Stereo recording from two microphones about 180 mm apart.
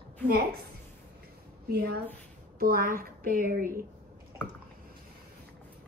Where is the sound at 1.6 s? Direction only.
60° right (ahead or behind).